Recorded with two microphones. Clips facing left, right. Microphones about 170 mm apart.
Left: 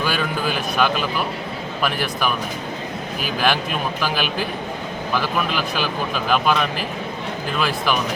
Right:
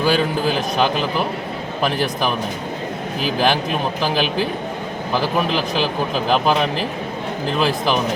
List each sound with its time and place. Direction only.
0.0 s speech: 30° right (ahead or behind)
3.4 s speech: 30° right (ahead or behind)